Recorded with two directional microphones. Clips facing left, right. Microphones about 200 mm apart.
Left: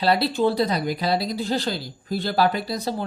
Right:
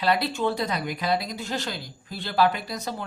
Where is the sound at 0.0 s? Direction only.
35° left (ahead or behind).